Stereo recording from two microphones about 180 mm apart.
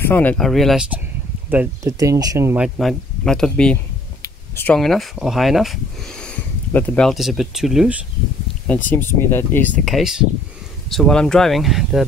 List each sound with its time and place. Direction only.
0.0 s speech: 10° left (ahead or behind); by 2.6 s 15° right (ahead or behind)
2.6 s speech: centre (ahead or behind)
4.2 s a sound: 15° left (ahead or behind)
4.7 s speech: centre (ahead or behind)
8.6 s speech: 10° left (ahead or behind)
9.8 s speech: centre (ahead or behind)